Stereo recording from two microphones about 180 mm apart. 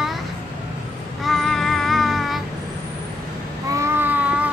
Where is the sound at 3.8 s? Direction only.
10° right (ahead or behind).